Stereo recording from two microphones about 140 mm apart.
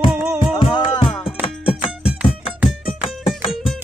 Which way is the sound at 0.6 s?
35° left (ahead or behind).